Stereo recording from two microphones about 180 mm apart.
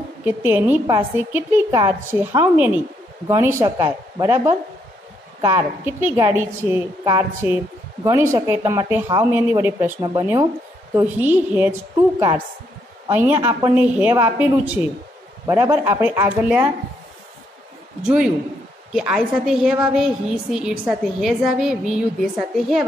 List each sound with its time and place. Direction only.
0.2 s a woman's voice: 10° right (ahead or behind)
13.1 s a woman's voice: 10° right (ahead or behind)
18.0 s a woman's voice: 5° right (ahead or behind)